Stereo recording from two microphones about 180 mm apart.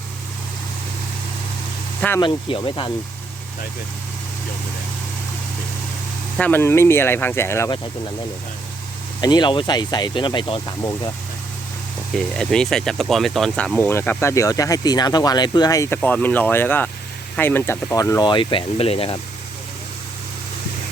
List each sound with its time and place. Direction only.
2.0 s speech: 10° left (ahead or behind)
2.2 s speech: 30° left (ahead or behind)
6.3 s speech: 10° left (ahead or behind)
9.2 s speech: 25° left (ahead or behind)
12.1 s speech: 5° left (ahead or behind); by 19.2 s 30° left (ahead or behind)